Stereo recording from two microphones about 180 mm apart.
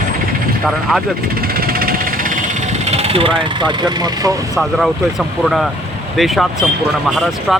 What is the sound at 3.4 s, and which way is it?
Speech, 25° right (ahead or behind).